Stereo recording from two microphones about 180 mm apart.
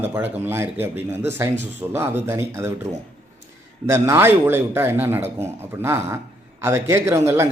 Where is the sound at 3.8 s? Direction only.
15° right (ahead or behind).